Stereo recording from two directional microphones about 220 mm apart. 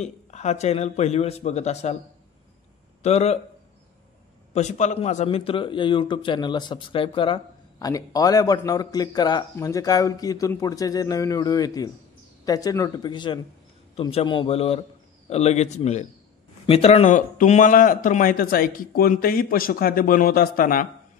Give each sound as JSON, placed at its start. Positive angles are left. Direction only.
{"t": 0.0, "sound": "a man's voice", "side_deg": 30}
{"t": 3.0, "sound": "speech", "side_deg": 30}
{"t": 4.6, "sound": "a man's voice", "side_deg": 30}